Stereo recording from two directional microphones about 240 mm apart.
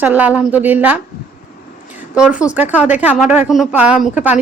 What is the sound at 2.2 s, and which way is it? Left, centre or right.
A woman's voice, centre.